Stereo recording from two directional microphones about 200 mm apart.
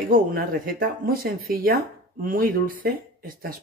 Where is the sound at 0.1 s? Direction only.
45° right (ahead or behind).